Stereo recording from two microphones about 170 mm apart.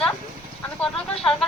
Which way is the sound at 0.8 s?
Centre (ahead or behind).